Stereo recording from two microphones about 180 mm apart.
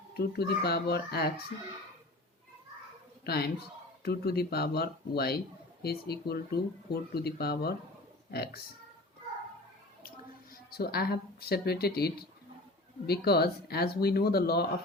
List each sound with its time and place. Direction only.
0.1 s speech: 60° left (ahead or behind)
3.2 s speech: 60° left (ahead or behind)
10.7 s speech: 60° left (ahead or behind)